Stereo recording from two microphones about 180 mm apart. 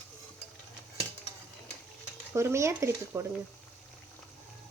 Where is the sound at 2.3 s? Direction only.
15° right (ahead or behind).